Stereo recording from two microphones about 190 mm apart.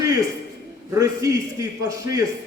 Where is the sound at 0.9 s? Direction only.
15° right (ahead or behind).